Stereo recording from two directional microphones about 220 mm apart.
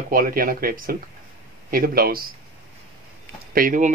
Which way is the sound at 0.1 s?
40° right (ahead or behind).